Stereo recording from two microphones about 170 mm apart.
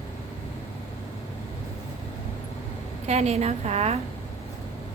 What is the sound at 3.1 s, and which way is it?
Speech, 40° right (ahead or behind).